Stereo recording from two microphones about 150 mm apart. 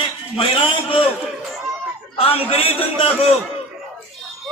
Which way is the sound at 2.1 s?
40° left (ahead or behind).